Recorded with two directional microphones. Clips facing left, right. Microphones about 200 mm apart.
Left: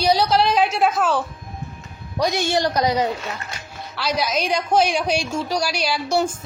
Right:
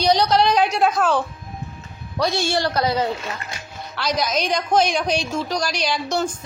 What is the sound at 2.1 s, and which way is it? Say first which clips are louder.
Speech: left 1 dB; 15° left (ahead or behind).